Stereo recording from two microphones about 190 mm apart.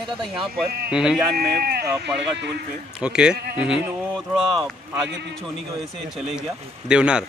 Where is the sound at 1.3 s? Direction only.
55° right (ahead or behind).